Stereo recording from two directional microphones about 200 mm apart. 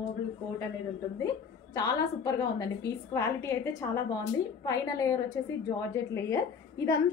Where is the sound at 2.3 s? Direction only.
20° left (ahead or behind).